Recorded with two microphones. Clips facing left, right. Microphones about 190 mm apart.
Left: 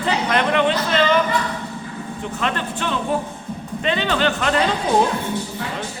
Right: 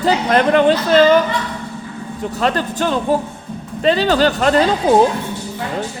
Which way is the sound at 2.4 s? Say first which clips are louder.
Right 7 dB; 40° right (ahead or behind).